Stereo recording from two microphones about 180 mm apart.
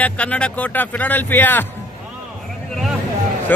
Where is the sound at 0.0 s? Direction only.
5° left (ahead or behind).